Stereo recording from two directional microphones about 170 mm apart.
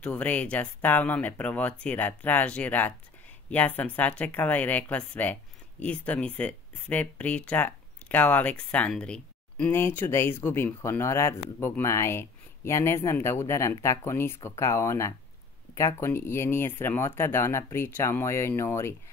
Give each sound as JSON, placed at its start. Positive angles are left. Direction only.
{"t": 0.0, "sound": "speech", "side_deg": 10}